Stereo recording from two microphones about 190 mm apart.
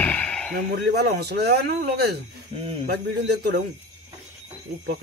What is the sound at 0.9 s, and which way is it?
A man's voice, 60° right (ahead or behind).